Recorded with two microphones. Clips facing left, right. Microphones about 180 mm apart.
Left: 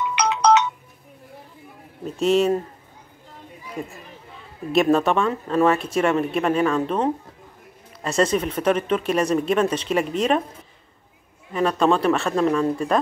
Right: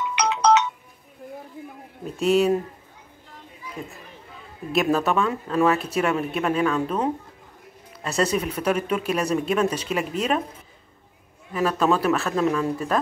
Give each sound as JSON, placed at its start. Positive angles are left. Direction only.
{"t": 0.1, "sound": "ringtone", "side_deg": 65}
{"t": 2.0, "sound": "speech", "side_deg": 0}
{"t": 4.7, "sound": "speech", "side_deg": 0}
{"t": 8.0, "sound": "speech", "side_deg": -5}
{"t": 11.5, "sound": "speech", "side_deg": -5}